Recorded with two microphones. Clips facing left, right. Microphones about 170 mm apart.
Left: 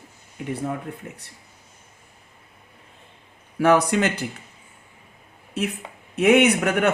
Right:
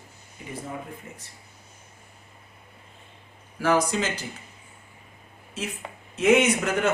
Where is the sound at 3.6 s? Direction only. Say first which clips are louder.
Left 5 dB; 65° left (ahead or behind).